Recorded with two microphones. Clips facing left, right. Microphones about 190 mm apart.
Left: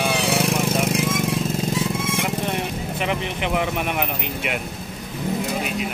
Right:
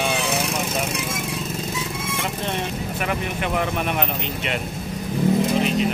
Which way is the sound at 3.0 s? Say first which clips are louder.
Left 1 dB; 20° left (ahead or behind).